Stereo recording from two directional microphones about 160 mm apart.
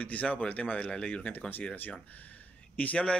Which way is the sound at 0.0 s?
10° left (ahead or behind).